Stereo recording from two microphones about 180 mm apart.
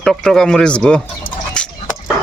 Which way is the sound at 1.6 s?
5° left (ahead or behind).